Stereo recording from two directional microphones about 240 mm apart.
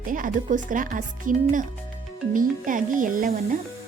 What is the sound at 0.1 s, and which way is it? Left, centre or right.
Speech, right.